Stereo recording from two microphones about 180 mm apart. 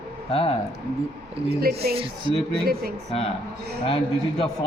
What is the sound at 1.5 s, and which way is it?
Speech, 55° right (ahead or behind).